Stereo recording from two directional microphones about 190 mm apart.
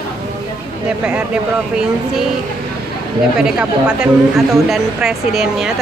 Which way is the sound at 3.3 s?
5° right (ahead or behind).